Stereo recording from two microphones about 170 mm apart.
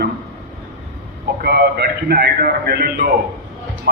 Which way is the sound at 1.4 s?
65° right (ahead or behind).